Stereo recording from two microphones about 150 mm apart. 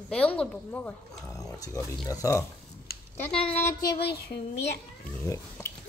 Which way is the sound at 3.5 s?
15° left (ahead or behind).